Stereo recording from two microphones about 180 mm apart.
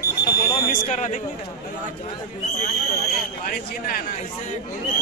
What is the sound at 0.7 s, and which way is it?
Speech, 40° left (ahead or behind).